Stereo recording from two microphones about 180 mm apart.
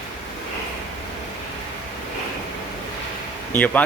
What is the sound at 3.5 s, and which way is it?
Speech, 10° left (ahead or behind).